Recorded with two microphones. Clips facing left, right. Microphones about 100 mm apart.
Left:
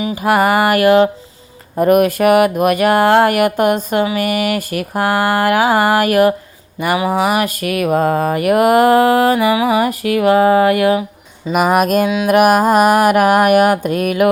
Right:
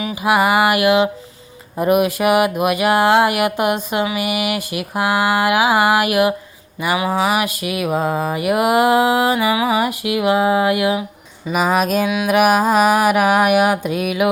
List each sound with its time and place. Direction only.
0.2 s speech: 45° left (ahead or behind)
9.0 s speech: 10° right (ahead or behind)
9.5 s speech: 35° left (ahead or behind)
10.2 s speech: 10° right (ahead or behind)
11.8 s speech: 50° left (ahead or behind)
12.5 s a sound: 5° left (ahead or behind)
12.8 s speech: 50° left (ahead or behind)